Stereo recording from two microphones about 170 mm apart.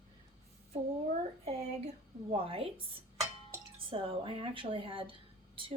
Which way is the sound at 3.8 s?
30° right (ahead or behind).